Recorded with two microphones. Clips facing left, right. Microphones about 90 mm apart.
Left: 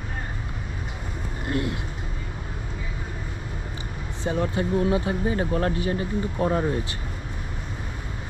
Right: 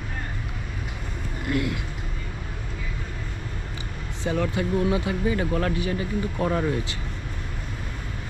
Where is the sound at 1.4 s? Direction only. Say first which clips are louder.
Right 1 dB; 30° left (ahead or behind).